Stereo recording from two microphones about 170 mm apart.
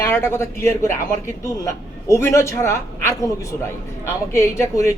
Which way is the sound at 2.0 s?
15° left (ahead or behind).